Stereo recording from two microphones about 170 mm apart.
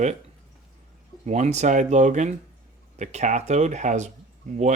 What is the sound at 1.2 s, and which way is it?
Speech, 40° right (ahead or behind).